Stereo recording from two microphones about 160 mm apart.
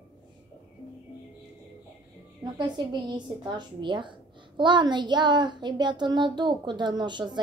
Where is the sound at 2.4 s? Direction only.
30° right (ahead or behind).